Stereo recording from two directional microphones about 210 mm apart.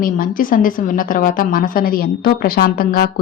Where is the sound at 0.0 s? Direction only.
40° left (ahead or behind).